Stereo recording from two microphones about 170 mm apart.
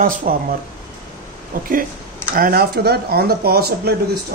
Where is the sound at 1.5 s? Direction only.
50° right (ahead or behind).